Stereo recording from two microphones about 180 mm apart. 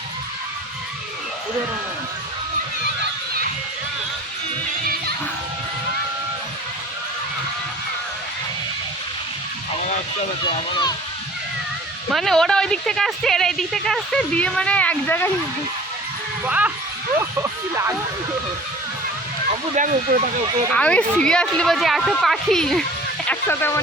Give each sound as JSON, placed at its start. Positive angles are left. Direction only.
{"t": 10.4, "sound": "speech", "side_deg": 25}
{"t": 12.1, "sound": "speech", "side_deg": 0}
{"t": 16.5, "sound": "speech", "side_deg": -10}
{"t": 19.7, "sound": "speech", "side_deg": -45}
{"t": 20.7, "sound": "speech", "side_deg": 5}